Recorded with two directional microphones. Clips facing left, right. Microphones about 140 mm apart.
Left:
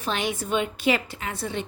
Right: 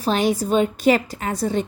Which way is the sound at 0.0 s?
40° right (ahead or behind).